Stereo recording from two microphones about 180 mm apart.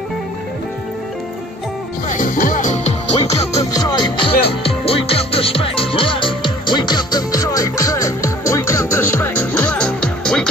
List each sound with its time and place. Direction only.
2.0 s music: 45° left (ahead or behind)
3.7 s music: 25° left (ahead or behind); by 10.5 s 5° left (ahead or behind)